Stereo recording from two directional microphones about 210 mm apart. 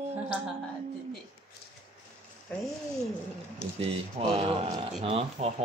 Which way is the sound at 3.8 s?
30° right (ahead or behind).